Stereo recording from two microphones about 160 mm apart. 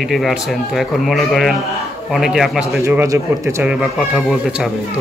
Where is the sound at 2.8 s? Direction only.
20° right (ahead or behind).